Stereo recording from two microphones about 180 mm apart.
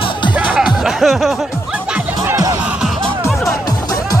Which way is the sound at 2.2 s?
20° right (ahead or behind).